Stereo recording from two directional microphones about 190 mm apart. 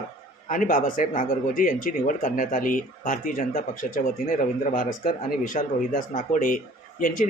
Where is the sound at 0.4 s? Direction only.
45° left (ahead or behind).